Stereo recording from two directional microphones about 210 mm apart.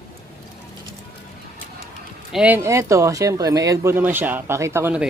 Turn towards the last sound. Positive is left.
turn(degrees=-10)  # may be behind; listen again after turning